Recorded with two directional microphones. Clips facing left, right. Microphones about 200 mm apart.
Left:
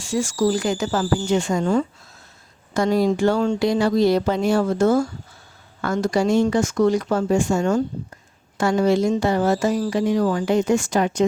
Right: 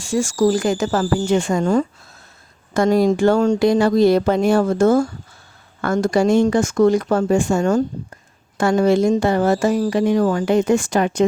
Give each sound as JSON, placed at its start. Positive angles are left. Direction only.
{"t": 0.0, "sound": "speech", "side_deg": -50}